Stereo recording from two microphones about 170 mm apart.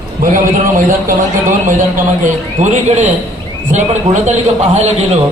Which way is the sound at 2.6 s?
45° right (ahead or behind).